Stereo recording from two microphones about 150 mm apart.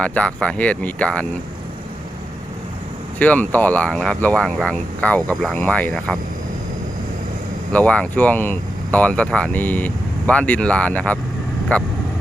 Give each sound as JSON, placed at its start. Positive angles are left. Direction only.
{"t": 0.0, "sound": "speech", "side_deg": 10}
{"t": 3.2, "sound": "speech", "side_deg": 10}
{"t": 7.7, "sound": "speech", "side_deg": 10}